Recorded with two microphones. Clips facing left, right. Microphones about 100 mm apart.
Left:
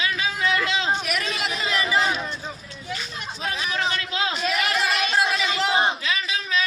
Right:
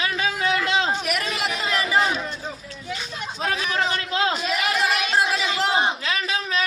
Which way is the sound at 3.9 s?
40° right (ahead or behind).